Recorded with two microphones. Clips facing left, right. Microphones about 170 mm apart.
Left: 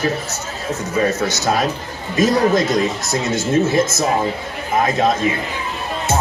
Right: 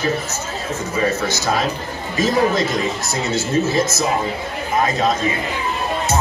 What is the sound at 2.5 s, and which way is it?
Speech, 45° left (ahead or behind).